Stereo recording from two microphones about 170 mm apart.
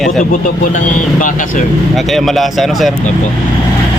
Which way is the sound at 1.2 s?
50° left (ahead or behind).